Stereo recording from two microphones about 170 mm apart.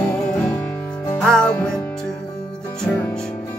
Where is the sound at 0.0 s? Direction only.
5° left (ahead or behind).